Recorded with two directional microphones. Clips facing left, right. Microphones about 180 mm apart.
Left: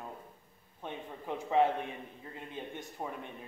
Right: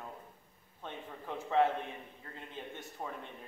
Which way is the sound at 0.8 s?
15° left (ahead or behind).